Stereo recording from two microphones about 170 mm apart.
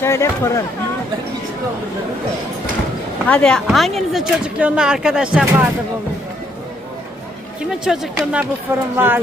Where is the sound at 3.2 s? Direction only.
5° left (ahead or behind).